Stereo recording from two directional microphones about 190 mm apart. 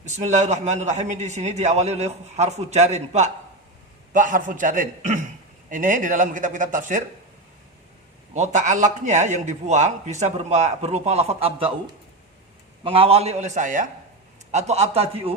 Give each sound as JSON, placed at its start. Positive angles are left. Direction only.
{"t": 0.0, "sound": "a man's voice", "side_deg": -35}
{"t": 8.3, "sound": "a man's voice", "side_deg": -40}
{"t": 12.8, "sound": "a man's voice", "side_deg": -30}